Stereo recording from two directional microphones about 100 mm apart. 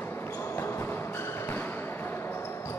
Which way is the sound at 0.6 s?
25° left (ahead or behind).